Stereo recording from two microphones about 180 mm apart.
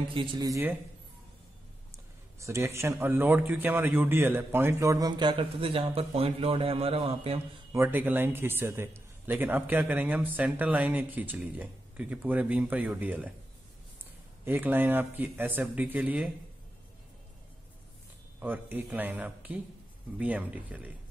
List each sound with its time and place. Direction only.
0.1 s speech: 25° right (ahead or behind)
2.4 s a man's voice: 15° right (ahead or behind); by 7.3 s 30° right (ahead or behind)
7.7 s a man's voice: 10° right (ahead or behind)
14.4 s a man's voice: 10° right (ahead or behind)
18.4 s a man's voice: 10° right (ahead or behind)